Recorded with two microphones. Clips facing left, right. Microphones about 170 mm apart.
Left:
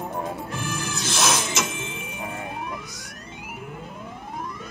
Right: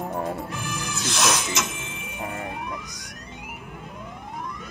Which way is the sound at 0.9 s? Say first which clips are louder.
Even; centre (ahead or behind).